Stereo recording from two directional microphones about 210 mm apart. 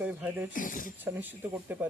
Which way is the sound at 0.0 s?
10° right (ahead or behind).